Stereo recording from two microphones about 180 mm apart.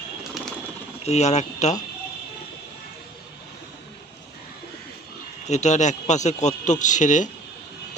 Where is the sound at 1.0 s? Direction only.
40° left (ahead or behind).